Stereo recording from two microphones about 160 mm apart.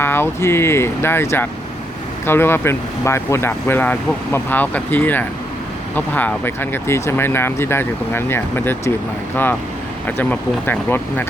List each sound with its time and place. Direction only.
0.0 s speech: 15° left (ahead or behind)